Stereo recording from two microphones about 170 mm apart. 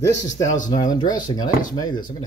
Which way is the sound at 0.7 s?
25° left (ahead or behind).